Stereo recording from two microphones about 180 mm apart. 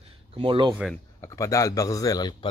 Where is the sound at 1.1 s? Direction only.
15° left (ahead or behind).